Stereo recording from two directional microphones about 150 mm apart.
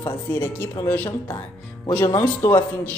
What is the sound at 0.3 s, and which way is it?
A man's voice, 15° left (ahead or behind).